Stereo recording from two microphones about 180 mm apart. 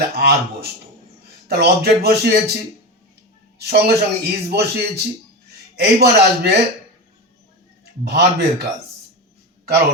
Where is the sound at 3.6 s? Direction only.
60° right (ahead or behind).